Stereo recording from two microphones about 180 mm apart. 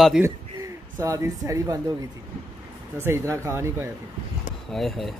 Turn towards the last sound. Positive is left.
turn(degrees=0)  # may be behind; listen again after turning